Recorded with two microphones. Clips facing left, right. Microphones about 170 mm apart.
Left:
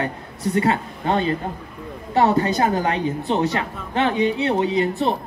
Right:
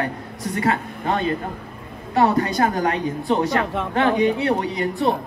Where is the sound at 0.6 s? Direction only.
30° left (ahead or behind).